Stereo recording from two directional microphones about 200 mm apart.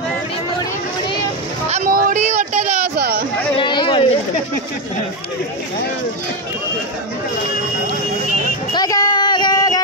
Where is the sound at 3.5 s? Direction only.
25° left (ahead or behind).